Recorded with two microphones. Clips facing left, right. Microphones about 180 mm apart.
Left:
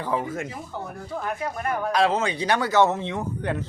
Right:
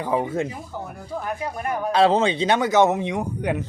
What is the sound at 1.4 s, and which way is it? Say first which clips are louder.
Speech: even; 15° right (ahead or behind).